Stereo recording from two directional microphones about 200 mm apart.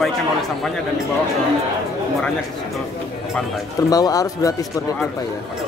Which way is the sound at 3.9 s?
20° left (ahead or behind).